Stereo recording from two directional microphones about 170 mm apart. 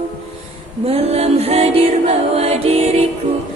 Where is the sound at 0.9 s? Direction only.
35° right (ahead or behind).